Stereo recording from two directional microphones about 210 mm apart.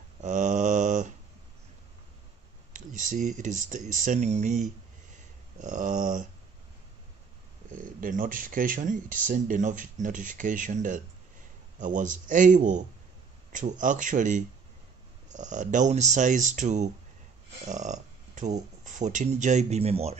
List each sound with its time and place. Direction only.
0.2 s mantra: 35° right (ahead or behind)
2.7 s speech: 35° right (ahead or behind)
5.6 s a sound: 35° right (ahead or behind)
7.7 s speech: 40° right (ahead or behind)